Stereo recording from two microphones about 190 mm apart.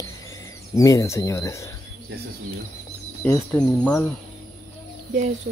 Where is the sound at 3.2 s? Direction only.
5° left (ahead or behind).